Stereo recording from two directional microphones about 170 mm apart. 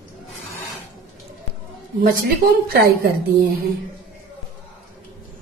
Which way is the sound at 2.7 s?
60° right (ahead or behind).